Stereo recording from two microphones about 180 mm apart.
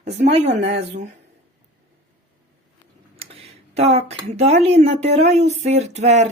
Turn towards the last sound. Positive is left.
turn(degrees=-40)  # may be behind; listen again after turning